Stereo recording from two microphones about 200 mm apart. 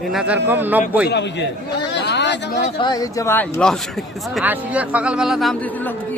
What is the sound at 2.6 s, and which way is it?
Speech, 25° left (ahead or behind).